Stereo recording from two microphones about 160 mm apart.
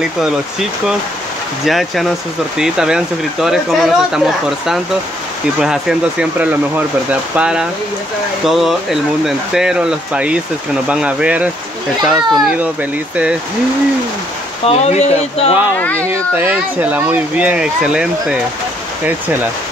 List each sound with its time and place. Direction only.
1.7 s speech: centre (ahead or behind)
5.6 s speech: 5° right (ahead or behind)
14.7 s speech: 40° left (ahead or behind)
15.8 s speech: 10° left (ahead or behind)
16.1 s speech: 10° right (ahead or behind)